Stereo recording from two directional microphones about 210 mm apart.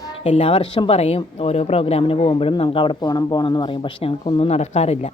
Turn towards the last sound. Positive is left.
turn(degrees=30)  # may be behind; listen again after turning